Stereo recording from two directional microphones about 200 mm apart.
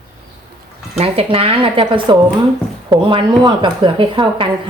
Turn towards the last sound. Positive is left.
turn(degrees=-25)  # may be behind; listen again after turning